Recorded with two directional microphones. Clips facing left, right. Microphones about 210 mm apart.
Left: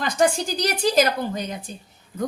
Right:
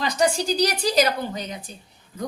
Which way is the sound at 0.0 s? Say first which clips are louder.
Left 1 dB; 50° left (ahead or behind).